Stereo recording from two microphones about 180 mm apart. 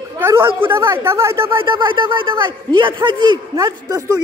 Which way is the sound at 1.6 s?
25° right (ahead or behind).